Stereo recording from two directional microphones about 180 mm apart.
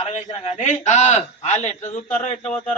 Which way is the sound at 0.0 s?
40° left (ahead or behind).